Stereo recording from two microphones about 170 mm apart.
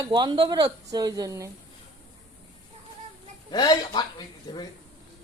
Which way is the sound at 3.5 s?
25° left (ahead or behind).